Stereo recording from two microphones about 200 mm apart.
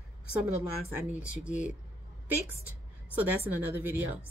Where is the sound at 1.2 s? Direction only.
5° right (ahead or behind).